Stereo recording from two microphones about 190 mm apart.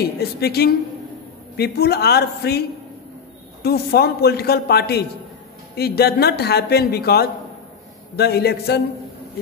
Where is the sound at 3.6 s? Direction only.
55° left (ahead or behind).